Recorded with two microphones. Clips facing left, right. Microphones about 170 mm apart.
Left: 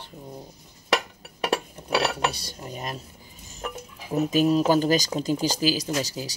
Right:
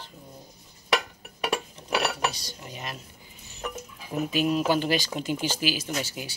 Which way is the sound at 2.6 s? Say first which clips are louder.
Left 5 dB; 40° left (ahead or behind).